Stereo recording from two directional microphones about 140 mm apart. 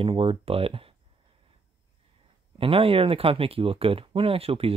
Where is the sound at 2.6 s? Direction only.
40° right (ahead or behind).